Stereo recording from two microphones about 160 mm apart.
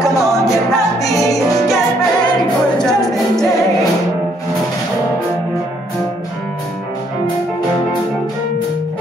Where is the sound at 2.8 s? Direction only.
5° left (ahead or behind).